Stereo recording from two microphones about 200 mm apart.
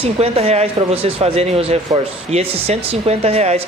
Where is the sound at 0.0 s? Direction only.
30° right (ahead or behind).